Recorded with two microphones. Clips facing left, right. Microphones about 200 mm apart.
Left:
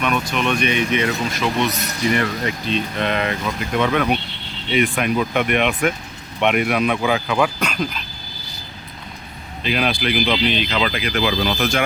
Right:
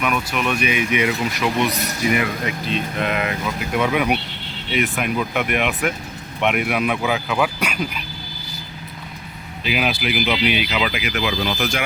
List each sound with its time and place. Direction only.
0.0 s speech: 5° right (ahead or behind)
9.6 s speech: 5° right (ahead or behind)
11.2 s speech: 35° left (ahead or behind)